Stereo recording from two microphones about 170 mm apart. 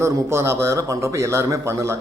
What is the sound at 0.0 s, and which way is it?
A man's voice, 15° right (ahead or behind).